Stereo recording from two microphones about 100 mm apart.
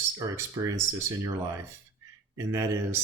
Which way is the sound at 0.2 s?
35° right (ahead or behind).